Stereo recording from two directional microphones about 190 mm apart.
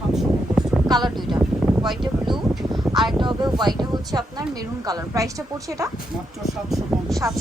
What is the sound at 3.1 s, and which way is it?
Speech, 25° right (ahead or behind).